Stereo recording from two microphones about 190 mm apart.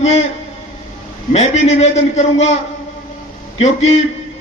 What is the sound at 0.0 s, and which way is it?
Speech, 35° left (ahead or behind).